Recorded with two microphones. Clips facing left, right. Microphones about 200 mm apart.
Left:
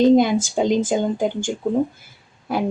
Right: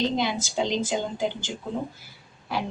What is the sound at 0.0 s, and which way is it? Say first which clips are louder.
A woman's voice: left 12 dB; 50° left (ahead or behind).